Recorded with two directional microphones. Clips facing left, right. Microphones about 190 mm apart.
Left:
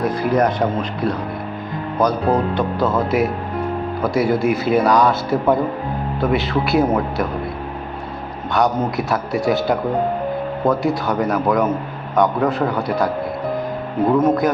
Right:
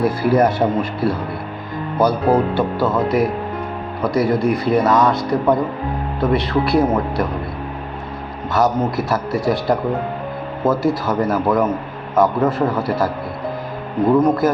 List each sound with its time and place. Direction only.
0.0 s speech: 5° right (ahead or behind)
8.5 s speech: centre (ahead or behind)